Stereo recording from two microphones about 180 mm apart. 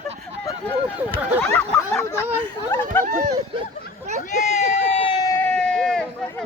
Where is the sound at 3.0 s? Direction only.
45° right (ahead or behind).